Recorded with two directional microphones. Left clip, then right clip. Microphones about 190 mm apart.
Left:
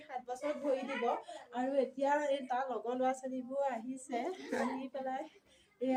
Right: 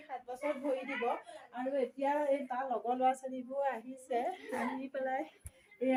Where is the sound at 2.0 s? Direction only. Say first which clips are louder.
Even; 10° right (ahead or behind).